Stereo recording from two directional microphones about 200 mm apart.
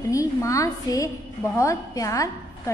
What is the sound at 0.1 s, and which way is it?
A woman's voice, 15° left (ahead or behind).